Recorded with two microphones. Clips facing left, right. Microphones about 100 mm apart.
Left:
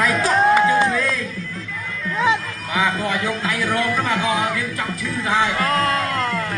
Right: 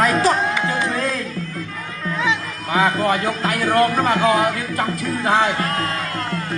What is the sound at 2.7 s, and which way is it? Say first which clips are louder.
Speech: right 4 dB; 45° right (ahead or behind).